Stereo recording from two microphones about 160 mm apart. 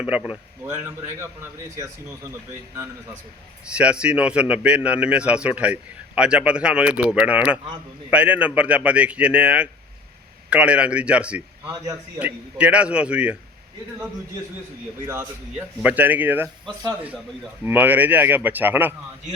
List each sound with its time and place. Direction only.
0.0 s a man's voice: 5° right (ahead or behind)
3.7 s a man's voice: 5° right (ahead or behind)
15.0 s a man's voice: 15° right (ahead or behind)